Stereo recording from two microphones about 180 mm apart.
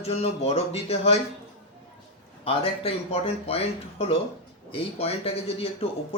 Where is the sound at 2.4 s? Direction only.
30° left (ahead or behind).